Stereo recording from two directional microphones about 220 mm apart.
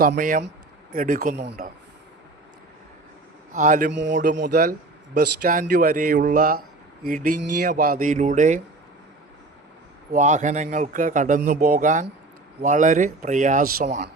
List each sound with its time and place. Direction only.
0.0 s a man's voice: 40° right (ahead or behind)
3.5 s a man's voice: 35° right (ahead or behind)
3.9 s a man's voice: 55° right (ahead or behind)
4.4 s a man's voice: 40° right (ahead or behind)
10.1 s a man's voice: 35° right (ahead or behind)